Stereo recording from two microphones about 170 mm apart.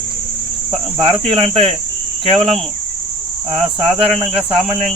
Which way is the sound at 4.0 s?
35° right (ahead or behind).